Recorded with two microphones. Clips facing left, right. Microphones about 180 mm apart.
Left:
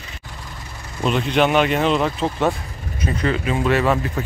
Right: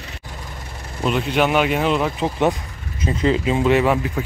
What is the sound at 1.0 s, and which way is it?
Speech, 5° right (ahead or behind).